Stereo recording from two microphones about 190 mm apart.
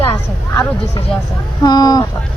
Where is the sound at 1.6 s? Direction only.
20° left (ahead or behind).